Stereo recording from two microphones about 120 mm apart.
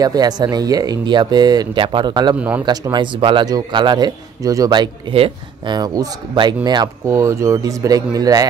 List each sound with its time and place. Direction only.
0.0 s speech: 35° right (ahead or behind)
2.3 s speech: 15° right (ahead or behind)
2.6 s speech: 35° right (ahead or behind)
5.1 s speech: 50° right (ahead or behind)
5.8 s speech: 35° right (ahead or behind)
7.1 s speech: 25° right (ahead or behind)